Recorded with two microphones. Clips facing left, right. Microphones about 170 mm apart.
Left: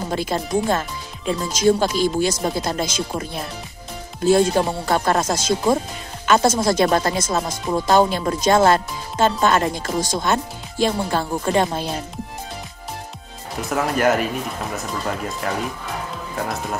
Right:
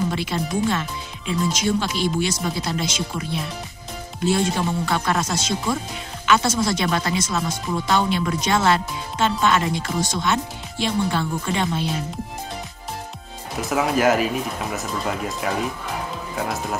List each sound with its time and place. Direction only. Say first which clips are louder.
0.1 s speech: left 3 dB; 45° left (ahead or behind)
13.6 s speech: even; centre (ahead or behind)